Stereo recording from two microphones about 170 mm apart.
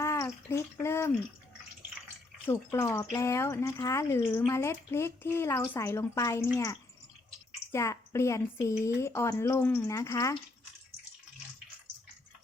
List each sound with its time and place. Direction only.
0.0 s speech: 15° left (ahead or behind)
2.7 s speech: 15° left (ahead or behind)